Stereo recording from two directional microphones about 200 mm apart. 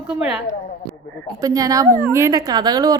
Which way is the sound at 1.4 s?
15° right (ahead or behind).